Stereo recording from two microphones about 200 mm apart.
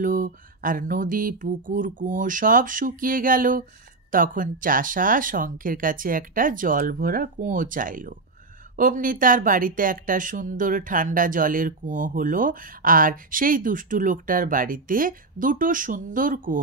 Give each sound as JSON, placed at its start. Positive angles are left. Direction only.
{"t": 0.0, "sound": "speech", "side_deg": -45}